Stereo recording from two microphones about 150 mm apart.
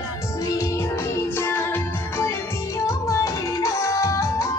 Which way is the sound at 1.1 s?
15° left (ahead or behind).